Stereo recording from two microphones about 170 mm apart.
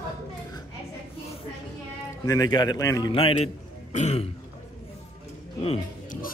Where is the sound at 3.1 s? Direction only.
35° left (ahead or behind).